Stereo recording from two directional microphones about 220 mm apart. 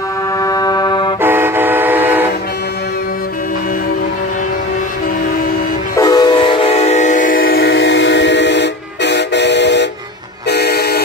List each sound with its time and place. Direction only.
0.4 s a sound: 15° left (ahead or behind)
1.2 s vehicle: 10° right (ahead or behind)
5.9 s train: 20° left (ahead or behind); by 9.8 s 50° left (ahead or behind)
10.5 s vehicle: 45° left (ahead or behind)